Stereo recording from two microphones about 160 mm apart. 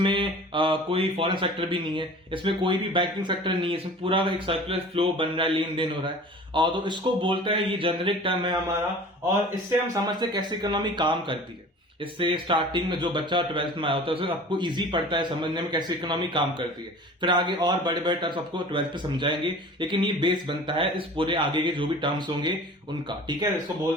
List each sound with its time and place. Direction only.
0.0 s speech: 30° right (ahead or behind)
9.9 s speech: 25° right (ahead or behind)